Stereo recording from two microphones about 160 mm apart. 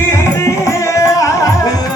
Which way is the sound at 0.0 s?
20° left (ahead or behind).